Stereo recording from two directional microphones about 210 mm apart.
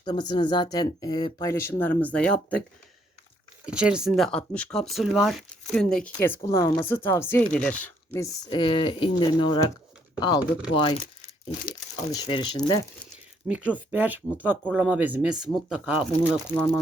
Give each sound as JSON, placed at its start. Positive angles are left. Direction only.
{"t": 0.0, "sound": "speech", "side_deg": 20}
{"t": 3.7, "sound": "speech", "side_deg": -5}
{"t": 8.4, "sound": "speech", "side_deg": 20}
{"t": 12.1, "sound": "speech", "side_deg": 20}
{"t": 13.5, "sound": "speech", "side_deg": -5}